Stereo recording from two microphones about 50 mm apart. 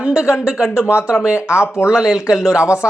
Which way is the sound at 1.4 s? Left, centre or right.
Left.